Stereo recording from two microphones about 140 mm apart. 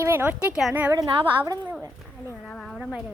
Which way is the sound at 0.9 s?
35° right (ahead or behind).